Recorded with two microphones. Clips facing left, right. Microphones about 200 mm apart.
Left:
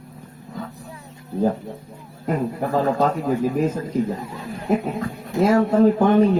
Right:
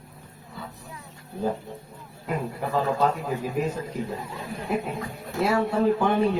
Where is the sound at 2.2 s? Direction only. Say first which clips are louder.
Left 6 dB; 45° left (ahead or behind).